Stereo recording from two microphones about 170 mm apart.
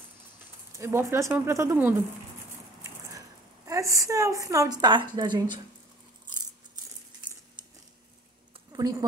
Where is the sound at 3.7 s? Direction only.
20° right (ahead or behind).